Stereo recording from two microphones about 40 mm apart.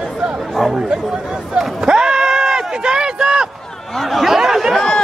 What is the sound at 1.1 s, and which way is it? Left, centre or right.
Speech, centre.